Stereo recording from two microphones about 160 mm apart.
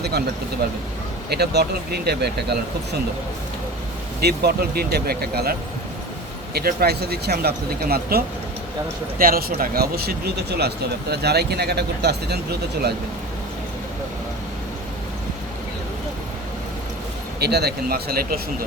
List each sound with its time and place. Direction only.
1.3 s speech: 90° right
4.2 s speech: 85° right
17.4 s speech: 90° right; by 18.3 s 70° right (ahead or behind)